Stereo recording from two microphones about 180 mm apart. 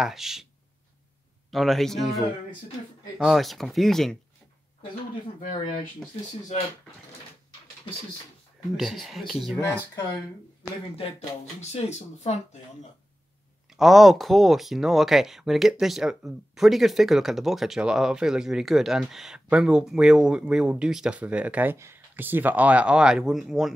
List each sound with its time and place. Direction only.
0.0 s speech: centre (ahead or behind)
1.5 s speech: centre (ahead or behind)
8.7 s speech: centre (ahead or behind)
11.7 s speech: 40° left (ahead or behind)
13.7 s speech: centre (ahead or behind)